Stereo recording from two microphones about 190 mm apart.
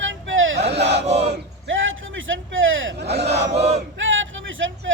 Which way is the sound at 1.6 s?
90° right.